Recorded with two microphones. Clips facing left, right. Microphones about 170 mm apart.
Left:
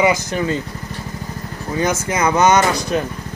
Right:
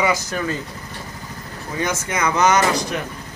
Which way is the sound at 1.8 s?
30° left (ahead or behind).